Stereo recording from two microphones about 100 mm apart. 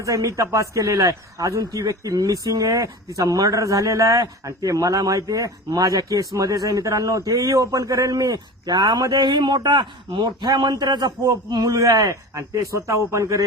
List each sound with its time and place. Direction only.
0.0 s speech: 35° right (ahead or behind)